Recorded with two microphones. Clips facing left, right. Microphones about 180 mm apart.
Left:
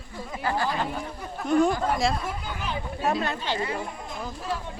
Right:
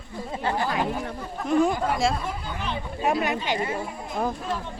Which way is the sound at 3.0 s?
15° right (ahead or behind).